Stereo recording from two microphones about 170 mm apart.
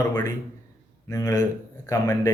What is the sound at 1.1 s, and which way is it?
Speech, 20° left (ahead or behind).